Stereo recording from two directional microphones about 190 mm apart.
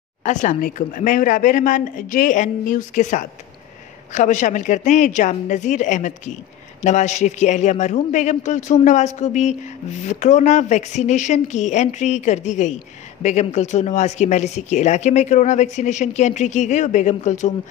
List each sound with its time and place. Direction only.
0.2 s a woman's voice: 40° left (ahead or behind)